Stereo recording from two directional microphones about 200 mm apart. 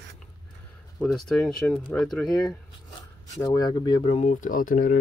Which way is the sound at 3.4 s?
20° left (ahead or behind).